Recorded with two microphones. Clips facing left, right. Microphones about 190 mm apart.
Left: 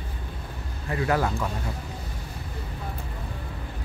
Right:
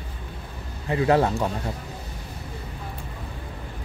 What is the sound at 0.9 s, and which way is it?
Speech, 25° right (ahead or behind).